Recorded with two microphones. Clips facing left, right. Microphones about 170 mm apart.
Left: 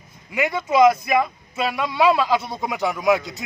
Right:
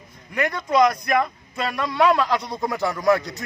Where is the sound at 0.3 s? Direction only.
5° left (ahead or behind).